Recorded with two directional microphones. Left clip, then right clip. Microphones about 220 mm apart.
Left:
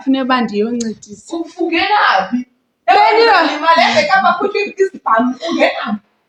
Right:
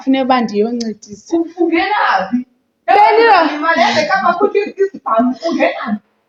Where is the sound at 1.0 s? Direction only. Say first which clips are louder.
Right 6 dB; 40° left (ahead or behind).